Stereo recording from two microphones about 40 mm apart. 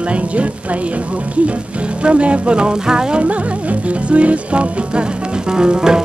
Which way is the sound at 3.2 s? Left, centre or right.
Right.